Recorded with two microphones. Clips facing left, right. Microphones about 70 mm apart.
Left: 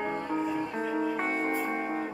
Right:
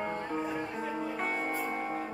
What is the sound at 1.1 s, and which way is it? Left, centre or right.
Music, left.